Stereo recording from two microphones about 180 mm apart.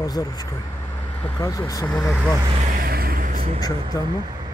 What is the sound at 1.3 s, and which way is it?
Speech, 20° left (ahead or behind).